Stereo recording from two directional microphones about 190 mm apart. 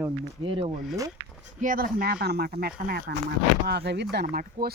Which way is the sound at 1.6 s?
45° right (ahead or behind).